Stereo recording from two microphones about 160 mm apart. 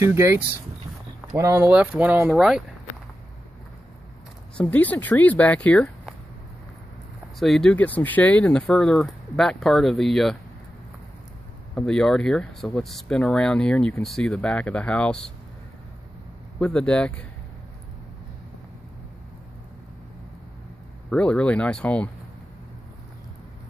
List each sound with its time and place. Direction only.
0.0 s speech: 15° right (ahead or behind)
4.6 s speech: 10° left (ahead or behind)
7.3 s speech: centre (ahead or behind)
11.7 s speech: 5° left (ahead or behind)
16.5 s speech: 5° left (ahead or behind)
21.1 s speech: 5° left (ahead or behind)